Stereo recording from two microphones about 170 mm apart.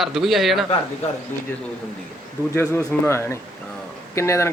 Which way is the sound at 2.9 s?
15° left (ahead or behind).